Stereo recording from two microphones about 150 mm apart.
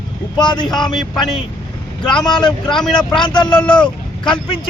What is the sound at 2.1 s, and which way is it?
Speech, 30° left (ahead or behind).